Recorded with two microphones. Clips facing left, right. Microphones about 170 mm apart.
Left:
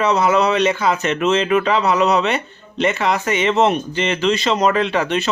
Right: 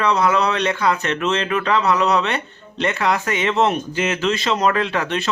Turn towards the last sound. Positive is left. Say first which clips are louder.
# left 3 dB
turn(degrees=0)  # may be behind; listen again after turning